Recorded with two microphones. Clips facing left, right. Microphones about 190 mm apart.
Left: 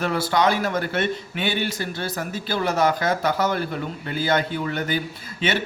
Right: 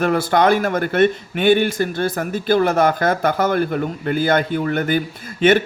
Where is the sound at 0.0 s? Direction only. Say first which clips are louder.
Right 5 dB; 50° right (ahead or behind).